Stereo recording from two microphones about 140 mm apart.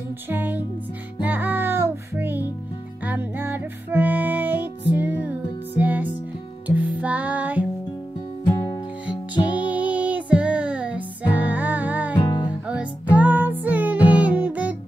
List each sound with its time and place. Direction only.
0.3 s music: 15° right (ahead or behind)
8.5 s music: 30° left (ahead or behind)
9.6 s music: 10° right (ahead or behind)
12.2 s music: 35° left (ahead or behind)
13.1 s music: 10° right (ahead or behind)